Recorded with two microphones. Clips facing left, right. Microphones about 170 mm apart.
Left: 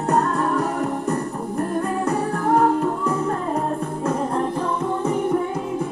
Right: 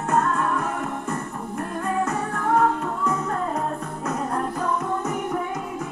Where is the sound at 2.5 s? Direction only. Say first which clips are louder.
Left 3 dB; 30° left (ahead or behind).